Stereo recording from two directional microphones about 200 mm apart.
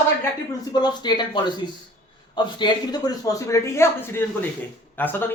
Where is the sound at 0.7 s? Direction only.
20° left (ahead or behind).